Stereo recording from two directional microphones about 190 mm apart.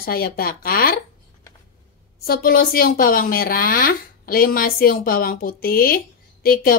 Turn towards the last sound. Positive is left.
turn(degrees=50)  # may be behind; listen again after turning